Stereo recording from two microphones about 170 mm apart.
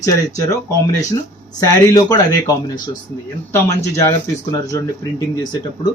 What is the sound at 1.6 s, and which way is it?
Speech, 20° left (ahead or behind).